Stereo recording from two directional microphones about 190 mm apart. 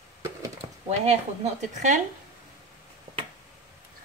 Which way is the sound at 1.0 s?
40° right (ahead or behind).